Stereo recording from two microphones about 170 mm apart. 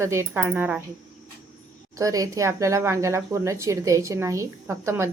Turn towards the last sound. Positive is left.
turn(degrees=-15)  # may be behind; listen again after turning